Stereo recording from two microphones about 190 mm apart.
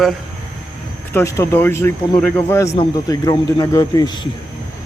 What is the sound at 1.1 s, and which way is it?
Speech, 15° left (ahead or behind).